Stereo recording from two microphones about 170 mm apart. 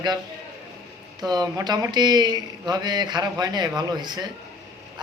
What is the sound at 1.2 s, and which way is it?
A man's voice, 25° right (ahead or behind).